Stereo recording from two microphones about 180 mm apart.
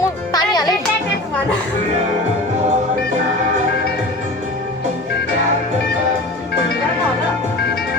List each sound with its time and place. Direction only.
0.3 s music: 20° left (ahead or behind)